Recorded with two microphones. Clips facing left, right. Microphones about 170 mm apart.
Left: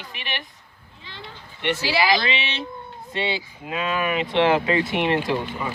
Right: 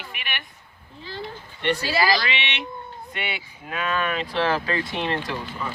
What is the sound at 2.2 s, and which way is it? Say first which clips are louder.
Speech: left 2 dB; 30° left (ahead or behind).